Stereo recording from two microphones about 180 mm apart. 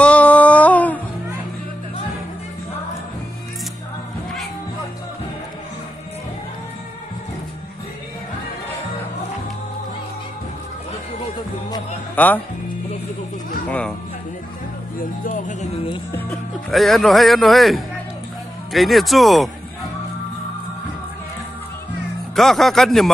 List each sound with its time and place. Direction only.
0.0 s music: 5° left (ahead or behind)
12.2 s speech: 10° left (ahead or behind)
13.7 s music: 5° left (ahead or behind)
15.0 s music: 50° left (ahead or behind); by 16.0 s 35° left (ahead or behind)
16.1 s a man's voice: 10° left (ahead or behind)
22.3 s a man's voice: centre (ahead or behind)